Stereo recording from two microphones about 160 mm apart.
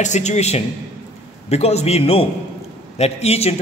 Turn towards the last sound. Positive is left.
turn(degrees=40)  # may be behind; listen again after turning